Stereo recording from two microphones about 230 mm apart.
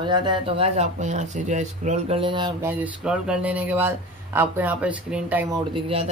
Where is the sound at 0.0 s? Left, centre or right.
Centre.